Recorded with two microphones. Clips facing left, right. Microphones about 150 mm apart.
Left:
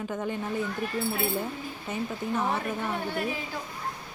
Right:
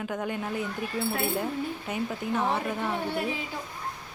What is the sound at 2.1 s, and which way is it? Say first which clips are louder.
Speech: right 1 dB; centre (ahead or behind).